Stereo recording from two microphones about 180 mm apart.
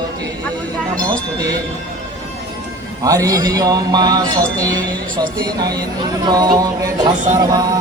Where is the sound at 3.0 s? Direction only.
20° right (ahead or behind).